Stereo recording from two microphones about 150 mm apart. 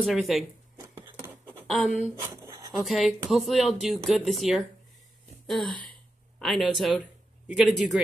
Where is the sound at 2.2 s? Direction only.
20° right (ahead or behind).